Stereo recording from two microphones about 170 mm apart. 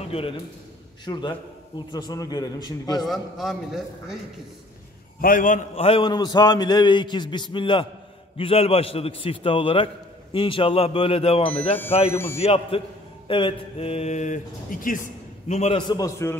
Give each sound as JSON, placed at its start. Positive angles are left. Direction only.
{"t": 1.0, "sound": "a man's voice", "side_deg": 25}
{"t": 3.0, "sound": "a man's voice", "side_deg": 0}
{"t": 5.2, "sound": "a man's voice", "side_deg": 50}
{"t": 12.1, "sound": "speech", "side_deg": 15}
{"t": 12.4, "sound": "speech", "side_deg": 35}
{"t": 15.9, "sound": "a man's voice", "side_deg": 20}